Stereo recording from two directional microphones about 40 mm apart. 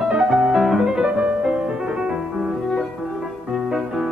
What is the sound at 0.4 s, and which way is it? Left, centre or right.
Music, centre.